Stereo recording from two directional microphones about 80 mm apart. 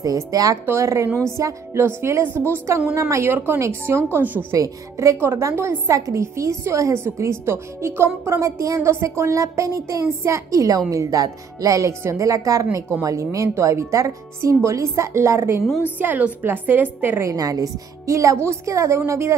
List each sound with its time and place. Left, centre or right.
0.0 s a woman's voice: right
4.5 s a woman's voice: right
15.8 s a woman's voice: right
17.3 s a woman's voice: right